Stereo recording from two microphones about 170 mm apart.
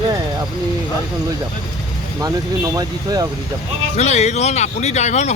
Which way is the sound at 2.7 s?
25° right (ahead or behind).